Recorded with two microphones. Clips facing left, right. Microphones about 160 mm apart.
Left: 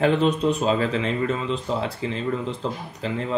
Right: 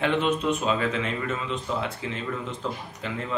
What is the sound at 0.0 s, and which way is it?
Speech, 35° left (ahead or behind).